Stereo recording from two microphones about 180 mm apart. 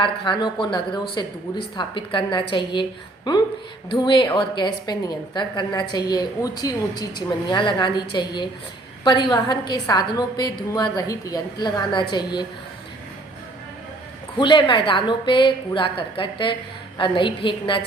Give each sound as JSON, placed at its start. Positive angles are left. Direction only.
{"t": 0.0, "sound": "a woman's voice", "side_deg": 25}
{"t": 14.3, "sound": "a woman's voice", "side_deg": 25}